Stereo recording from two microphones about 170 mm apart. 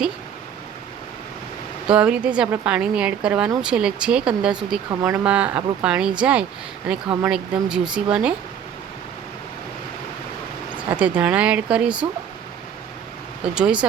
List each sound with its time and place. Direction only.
1.9 s speech: 5° right (ahead or behind)
4.9 s speech: 15° right (ahead or behind)
11.0 s speech: 10° right (ahead or behind)
13.5 s speech: 5° right (ahead or behind)